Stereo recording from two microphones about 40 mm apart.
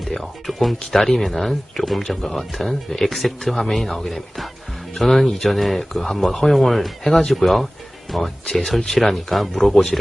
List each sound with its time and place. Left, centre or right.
0.1 s speech: centre